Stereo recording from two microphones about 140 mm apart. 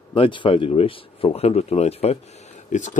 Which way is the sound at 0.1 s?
35° left (ahead or behind).